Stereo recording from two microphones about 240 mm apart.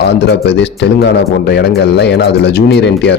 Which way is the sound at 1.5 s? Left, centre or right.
Left.